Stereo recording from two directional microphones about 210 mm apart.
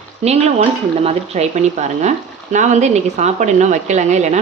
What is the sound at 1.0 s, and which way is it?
A woman's voice, 30° right (ahead or behind).